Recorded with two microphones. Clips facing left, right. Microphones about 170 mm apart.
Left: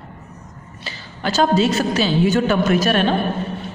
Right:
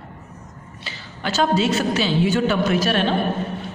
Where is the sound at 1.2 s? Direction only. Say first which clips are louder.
Left 3 dB; 40° left (ahead or behind).